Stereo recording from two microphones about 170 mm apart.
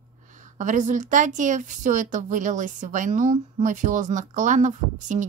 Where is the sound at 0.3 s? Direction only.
45° right (ahead or behind).